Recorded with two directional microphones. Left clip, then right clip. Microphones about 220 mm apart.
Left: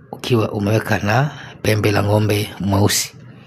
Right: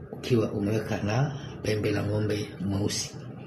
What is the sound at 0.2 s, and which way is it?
Speech, 50° left (ahead or behind).